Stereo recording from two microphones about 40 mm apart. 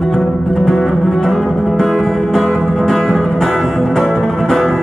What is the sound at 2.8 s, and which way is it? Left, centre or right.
Music, centre.